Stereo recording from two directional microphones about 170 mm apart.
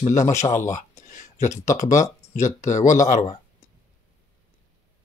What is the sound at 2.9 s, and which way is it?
Speech, 45° left (ahead or behind).